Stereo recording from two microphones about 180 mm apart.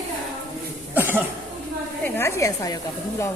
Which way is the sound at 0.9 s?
10° right (ahead or behind).